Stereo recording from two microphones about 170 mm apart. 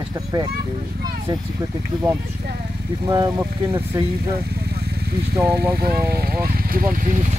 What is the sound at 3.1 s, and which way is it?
Speech, 20° right (ahead or behind).